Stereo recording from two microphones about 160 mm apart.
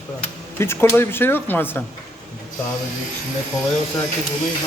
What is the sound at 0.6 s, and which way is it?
Speech, 15° left (ahead or behind).